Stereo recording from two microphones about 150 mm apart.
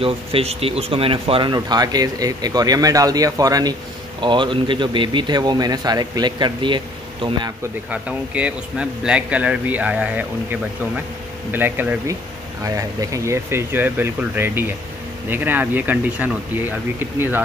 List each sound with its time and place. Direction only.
0.0 s speech: 40° right (ahead or behind)
7.9 s a man's voice: 10° right (ahead or behind)